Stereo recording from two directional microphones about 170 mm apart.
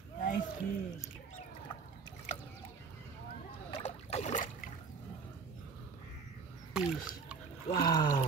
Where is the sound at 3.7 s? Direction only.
40° left (ahead or behind).